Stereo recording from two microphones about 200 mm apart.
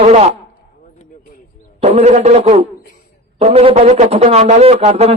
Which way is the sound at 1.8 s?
35° right (ahead or behind).